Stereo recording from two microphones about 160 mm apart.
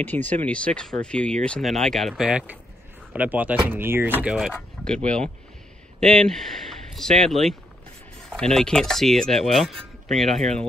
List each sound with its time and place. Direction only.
0.0 s speech: 10° left (ahead or behind)